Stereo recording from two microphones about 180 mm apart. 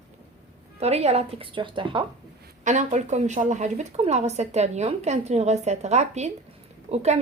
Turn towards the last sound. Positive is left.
turn(degrees=-35)  # may be behind; listen again after turning